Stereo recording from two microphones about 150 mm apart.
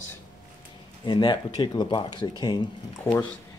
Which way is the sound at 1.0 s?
30° left (ahead or behind).